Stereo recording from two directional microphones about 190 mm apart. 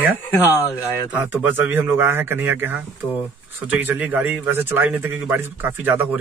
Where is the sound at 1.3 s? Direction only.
10° right (ahead or behind).